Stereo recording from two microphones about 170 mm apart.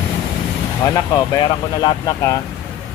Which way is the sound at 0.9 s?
20° left (ahead or behind).